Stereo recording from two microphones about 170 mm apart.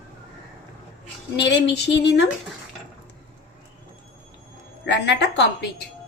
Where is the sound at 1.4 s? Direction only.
90° left.